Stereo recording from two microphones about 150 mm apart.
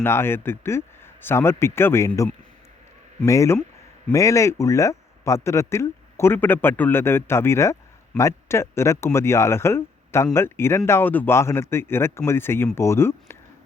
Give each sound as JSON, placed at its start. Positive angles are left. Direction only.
{"t": 0.0, "sound": "speech", "side_deg": 15}